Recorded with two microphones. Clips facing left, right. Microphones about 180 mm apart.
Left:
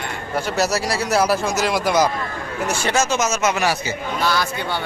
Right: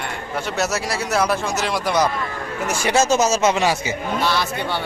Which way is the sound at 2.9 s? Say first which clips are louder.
Right 5 dB; 35° right (ahead or behind).